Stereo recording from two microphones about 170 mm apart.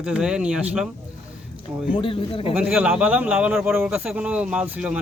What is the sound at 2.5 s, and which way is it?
Speech, 5° right (ahead or behind).